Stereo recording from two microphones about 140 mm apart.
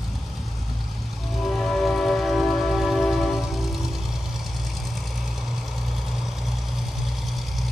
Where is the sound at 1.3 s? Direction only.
Centre (ahead or behind).